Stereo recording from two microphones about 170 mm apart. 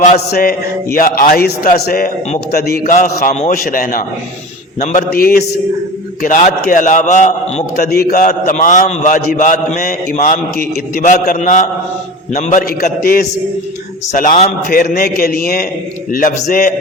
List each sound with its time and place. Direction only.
0.3 s mantra: 65° left (ahead or behind)
0.9 s a man's voice: 55° left (ahead or behind)
6.2 s a man's voice: 50° left (ahead or behind)
7.8 s a man's voice: 65° left (ahead or behind); by 14.5 s 45° left (ahead or behind)
14.7 s a man's voice: 60° left (ahead or behind)